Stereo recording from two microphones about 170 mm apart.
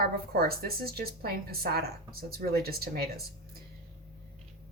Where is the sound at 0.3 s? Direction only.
65° right (ahead or behind).